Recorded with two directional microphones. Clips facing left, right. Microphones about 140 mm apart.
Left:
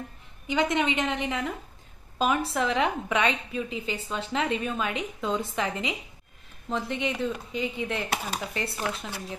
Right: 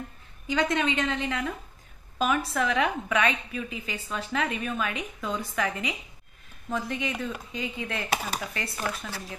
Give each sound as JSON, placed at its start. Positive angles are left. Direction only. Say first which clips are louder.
{"t": 0.5, "sound": "a woman's voice", "louder": "left 1 dB", "side_deg": 20}